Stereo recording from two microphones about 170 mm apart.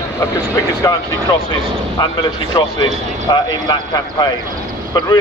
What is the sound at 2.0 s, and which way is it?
A man's voice, 25° left (ahead or behind).